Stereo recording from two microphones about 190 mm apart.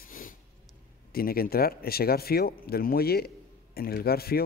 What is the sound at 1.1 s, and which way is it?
A man's voice, 50° left (ahead or behind).